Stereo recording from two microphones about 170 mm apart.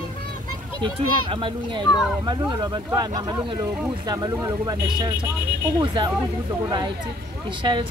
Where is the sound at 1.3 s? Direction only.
30° right (ahead or behind).